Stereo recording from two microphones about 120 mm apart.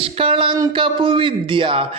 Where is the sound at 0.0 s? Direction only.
50° right (ahead or behind).